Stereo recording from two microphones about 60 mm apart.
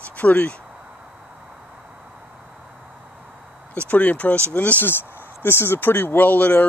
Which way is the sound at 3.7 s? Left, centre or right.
Left.